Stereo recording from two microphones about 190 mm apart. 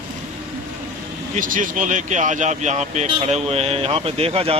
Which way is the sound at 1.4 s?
45° right (ahead or behind).